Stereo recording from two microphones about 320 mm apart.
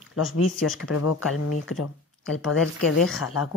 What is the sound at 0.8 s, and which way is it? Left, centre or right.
Speech, left.